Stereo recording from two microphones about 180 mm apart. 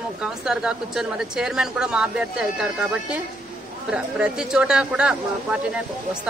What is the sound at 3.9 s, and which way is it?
A woman's voice, 5° right (ahead or behind).